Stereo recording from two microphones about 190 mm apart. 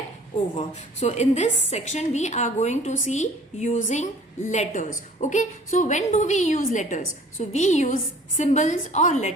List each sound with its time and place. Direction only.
0.5 s a woman's voice: 35° left (ahead or behind)